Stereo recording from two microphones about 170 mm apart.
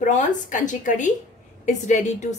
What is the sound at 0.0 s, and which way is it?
A woman's voice, 50° left (ahead or behind).